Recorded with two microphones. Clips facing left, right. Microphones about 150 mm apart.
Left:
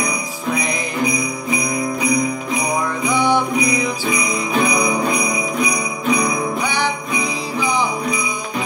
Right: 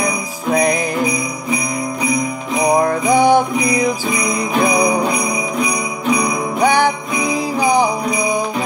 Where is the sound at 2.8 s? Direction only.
45° right (ahead or behind).